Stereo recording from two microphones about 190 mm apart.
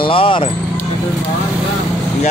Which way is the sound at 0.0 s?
25° left (ahead or behind).